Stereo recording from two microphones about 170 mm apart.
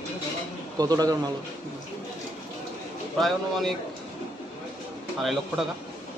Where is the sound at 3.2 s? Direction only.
Centre (ahead or behind).